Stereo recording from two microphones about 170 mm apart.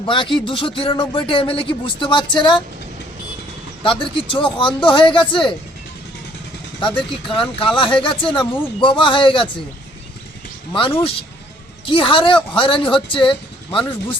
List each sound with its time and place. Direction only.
0.0 s speech: 30° left (ahead or behind)
3.8 s speech: 30° left (ahead or behind)
6.7 s speech: 30° left (ahead or behind)
10.7 s speech: 30° left (ahead or behind)